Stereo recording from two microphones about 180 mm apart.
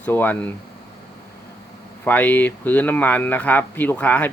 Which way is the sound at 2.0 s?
10° left (ahead or behind).